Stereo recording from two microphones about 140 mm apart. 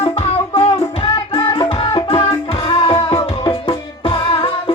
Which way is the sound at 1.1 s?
30° left (ahead or behind).